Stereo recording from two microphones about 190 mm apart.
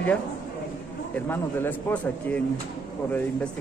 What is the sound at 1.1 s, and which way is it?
Speech, 10° left (ahead or behind).